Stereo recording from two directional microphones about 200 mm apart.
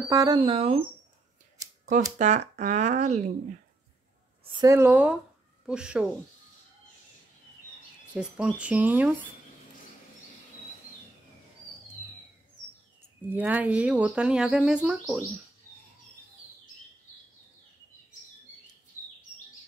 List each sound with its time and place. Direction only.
0.1 s speech: 20° right (ahead or behind)
2.1 s speech: 35° right (ahead or behind)
4.5 s speech: 20° right (ahead or behind)
8.1 s speech: 5° right (ahead or behind)
13.3 s speech: 10° right (ahead or behind)